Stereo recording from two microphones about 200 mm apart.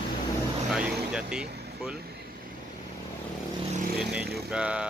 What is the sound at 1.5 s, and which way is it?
Vehicle, 55° right (ahead or behind).